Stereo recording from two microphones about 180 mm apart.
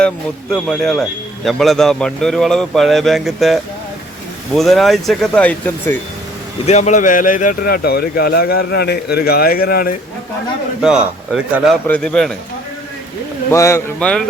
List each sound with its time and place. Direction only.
0.5 s speech: 5° left (ahead or behind)
6.7 s speech: 40° left (ahead or behind); by 9.9 s 55° left (ahead or behind)
10.8 s speech: centre (ahead or behind)
13.5 s speech: 15° left (ahead or behind)
14.0 s speech: 5° left (ahead or behind)